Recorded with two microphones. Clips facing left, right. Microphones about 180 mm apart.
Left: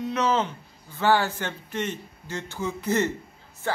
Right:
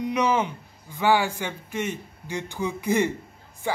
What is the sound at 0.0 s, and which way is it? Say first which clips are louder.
Speech: right 1 dB; 15° right (ahead or behind).